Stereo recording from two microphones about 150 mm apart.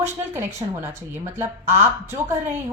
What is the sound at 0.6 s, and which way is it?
Speech, 35° right (ahead or behind).